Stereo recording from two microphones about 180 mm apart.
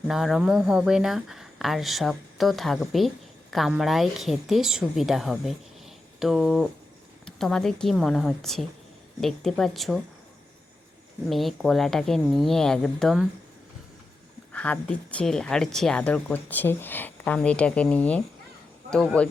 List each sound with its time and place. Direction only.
0.1 s a woman's voice: centre (ahead or behind)
11.3 s a woman's voice: centre (ahead or behind)
14.5 s a woman's voice: 5° left (ahead or behind)